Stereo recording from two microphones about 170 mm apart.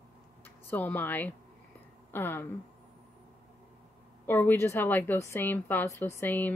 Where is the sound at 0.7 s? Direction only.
10° left (ahead or behind).